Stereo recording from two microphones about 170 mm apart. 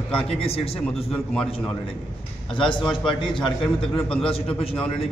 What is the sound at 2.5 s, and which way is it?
Speech, 30° left (ahead or behind).